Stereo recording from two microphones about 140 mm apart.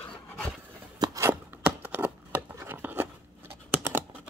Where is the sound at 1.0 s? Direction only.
20° right (ahead or behind).